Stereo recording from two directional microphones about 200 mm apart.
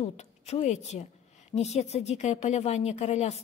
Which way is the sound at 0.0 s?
35° left (ahead or behind).